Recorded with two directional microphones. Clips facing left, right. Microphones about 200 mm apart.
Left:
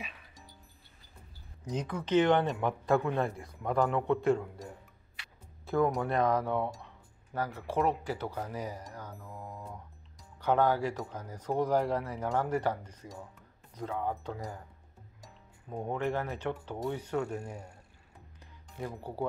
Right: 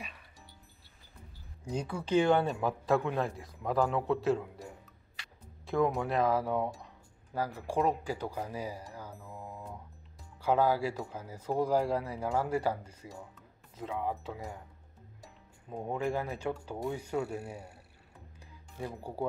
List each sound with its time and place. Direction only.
0.0 s music: centre (ahead or behind)
1.6 s speech: 10° right (ahead or behind)
15.8 s speech: 10° right (ahead or behind)